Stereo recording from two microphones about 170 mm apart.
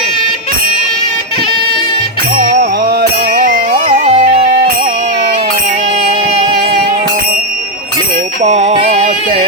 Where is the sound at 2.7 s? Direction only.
65° right (ahead or behind); by 5.2 s 35° right (ahead or behind).